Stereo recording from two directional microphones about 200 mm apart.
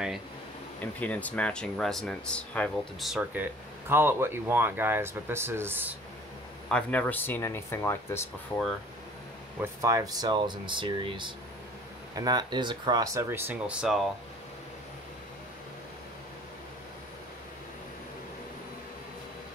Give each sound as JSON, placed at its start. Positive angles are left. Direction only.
{"t": 0.9, "sound": "speech", "side_deg": 5}
{"t": 6.7, "sound": "speech", "side_deg": 5}
{"t": 9.6, "sound": "speech", "side_deg": -15}